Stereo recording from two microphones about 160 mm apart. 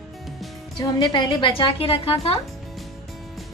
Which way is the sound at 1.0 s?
30° left (ahead or behind).